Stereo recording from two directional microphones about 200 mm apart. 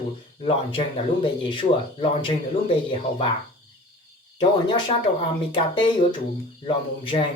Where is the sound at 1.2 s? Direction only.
25° left (ahead or behind).